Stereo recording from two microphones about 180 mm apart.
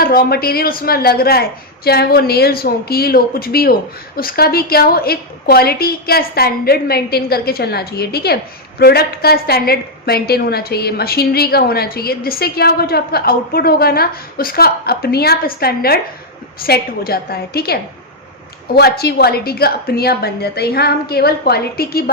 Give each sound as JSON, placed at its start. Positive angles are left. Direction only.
{"t": 0.0, "sound": "a woman's voice", "side_deg": 55}